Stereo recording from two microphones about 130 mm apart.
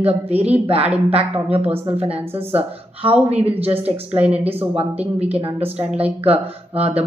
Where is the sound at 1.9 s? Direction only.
50° right (ahead or behind).